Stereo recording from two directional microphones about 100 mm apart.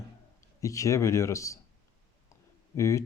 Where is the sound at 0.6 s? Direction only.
35° left (ahead or behind).